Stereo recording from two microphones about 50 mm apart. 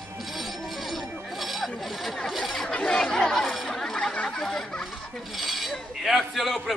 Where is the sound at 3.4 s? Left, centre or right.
Centre.